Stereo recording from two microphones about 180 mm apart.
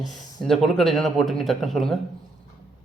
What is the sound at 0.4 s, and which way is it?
Speech, centre (ahead or behind).